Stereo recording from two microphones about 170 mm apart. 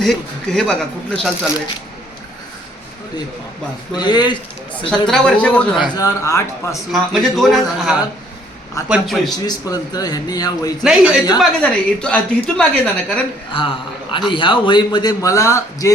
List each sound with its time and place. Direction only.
0.0 s a woman's voice: centre (ahead or behind)
3.9 s a man's voice: 25° left (ahead or behind)
4.9 s a woman's voice: 5° left (ahead or behind)
6.0 s a man's voice: 20° left (ahead or behind)
6.9 s a woman's voice: centre (ahead or behind)
9.3 s a man's voice: 20° left (ahead or behind)
10.8 s a woman's voice: 5° right (ahead or behind)
13.5 s a man's voice: 30° left (ahead or behind)